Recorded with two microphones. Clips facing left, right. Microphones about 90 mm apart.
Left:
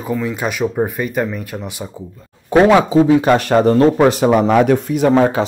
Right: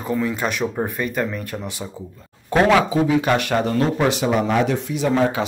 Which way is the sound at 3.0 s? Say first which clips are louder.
Left 6 dB; 35° left (ahead or behind).